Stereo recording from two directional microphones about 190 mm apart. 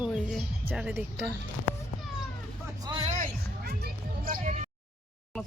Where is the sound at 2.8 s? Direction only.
25° right (ahead or behind).